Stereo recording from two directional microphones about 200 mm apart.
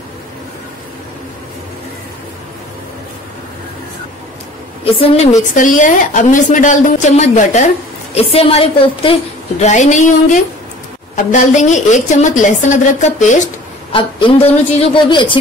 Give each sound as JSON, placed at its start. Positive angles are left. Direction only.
{"t": 4.9, "sound": "a woman's voice", "side_deg": 30}
{"t": 13.9, "sound": "a woman's voice", "side_deg": 25}